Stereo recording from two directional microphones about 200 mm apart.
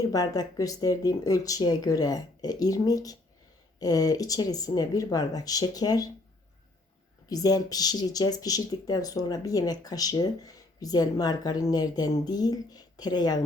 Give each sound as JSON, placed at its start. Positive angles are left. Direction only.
{"t": 0.1, "sound": "speech", "side_deg": 20}
{"t": 7.3, "sound": "speech", "side_deg": 20}